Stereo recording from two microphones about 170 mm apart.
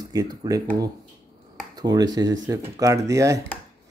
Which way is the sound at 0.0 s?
20° right (ahead or behind).